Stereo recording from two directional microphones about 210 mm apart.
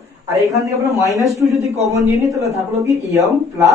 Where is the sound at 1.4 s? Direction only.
10° right (ahead or behind).